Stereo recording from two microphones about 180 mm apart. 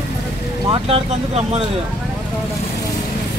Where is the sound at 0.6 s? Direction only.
30° right (ahead or behind).